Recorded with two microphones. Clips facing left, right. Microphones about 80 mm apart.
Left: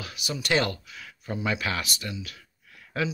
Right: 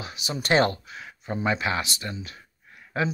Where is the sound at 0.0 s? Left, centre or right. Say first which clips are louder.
Right 1 dB; right.